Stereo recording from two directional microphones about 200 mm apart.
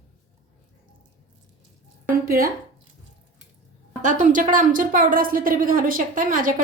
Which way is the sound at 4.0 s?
40° right (ahead or behind).